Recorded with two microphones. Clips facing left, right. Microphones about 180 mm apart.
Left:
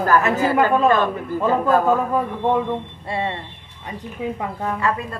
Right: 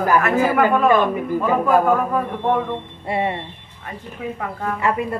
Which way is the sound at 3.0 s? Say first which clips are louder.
Right 4 dB; 20° right (ahead or behind).